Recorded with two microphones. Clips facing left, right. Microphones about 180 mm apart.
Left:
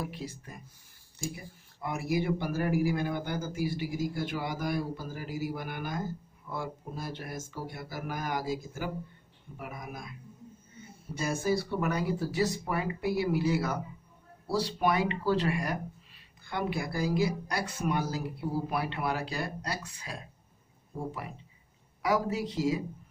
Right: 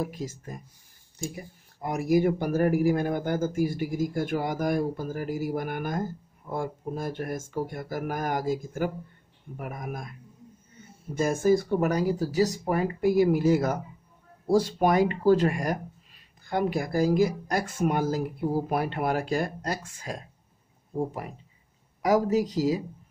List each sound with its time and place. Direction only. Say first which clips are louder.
0.0 s speech: right 6 dB; 45° right (ahead or behind)
11.1 s speech: right 7 dB; 45° right (ahead or behind)
22.0 s speech: right 6 dB; 40° right (ahead or behind)